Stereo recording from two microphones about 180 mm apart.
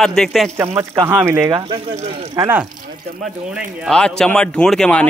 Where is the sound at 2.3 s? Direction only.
20° right (ahead or behind).